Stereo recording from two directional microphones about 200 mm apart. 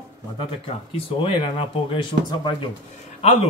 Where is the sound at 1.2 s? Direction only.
25° left (ahead or behind).